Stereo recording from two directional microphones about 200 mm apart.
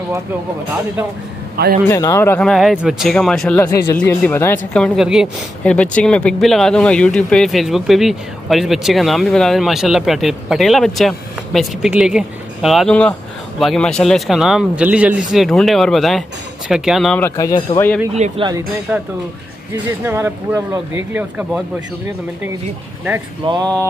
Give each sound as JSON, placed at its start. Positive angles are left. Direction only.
{"t": 1.9, "sound": "speech", "side_deg": 15}
{"t": 3.6, "sound": "speech", "side_deg": 15}
{"t": 17.2, "sound": "speech", "side_deg": 15}
{"t": 18.1, "sound": "speech", "side_deg": -35}
{"t": 20.1, "sound": "speech", "side_deg": -10}
{"t": 23.4, "sound": "a sound", "side_deg": -25}